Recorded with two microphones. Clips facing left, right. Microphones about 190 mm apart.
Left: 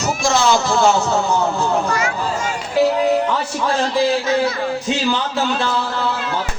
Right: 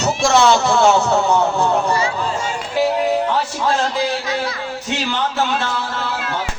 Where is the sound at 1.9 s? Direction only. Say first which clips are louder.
Right 2 dB; 30° right (ahead or behind).